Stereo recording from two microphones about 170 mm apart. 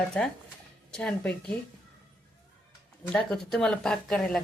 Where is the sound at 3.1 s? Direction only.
5° left (ahead or behind).